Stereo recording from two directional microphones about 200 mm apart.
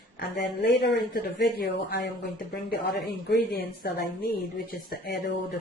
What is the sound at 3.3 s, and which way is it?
Speech, 50° left (ahead or behind).